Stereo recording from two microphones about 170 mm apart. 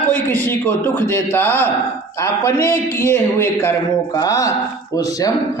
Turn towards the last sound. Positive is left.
turn(degrees=20)  # may be behind; listen again after turning